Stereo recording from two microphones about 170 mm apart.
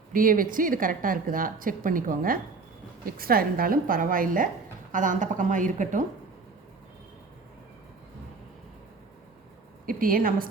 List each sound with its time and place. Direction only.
0.1 s a woman's voice: 55° right (ahead or behind)
9.8 s a woman's voice: 55° right (ahead or behind)